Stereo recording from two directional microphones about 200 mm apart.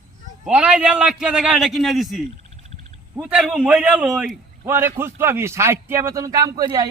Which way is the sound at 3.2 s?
5° right (ahead or behind).